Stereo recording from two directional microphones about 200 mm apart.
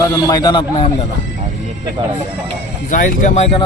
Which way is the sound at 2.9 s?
40° left (ahead or behind).